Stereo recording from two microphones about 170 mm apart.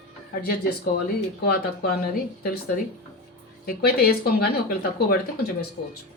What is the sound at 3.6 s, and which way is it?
Speech, 65° left (ahead or behind).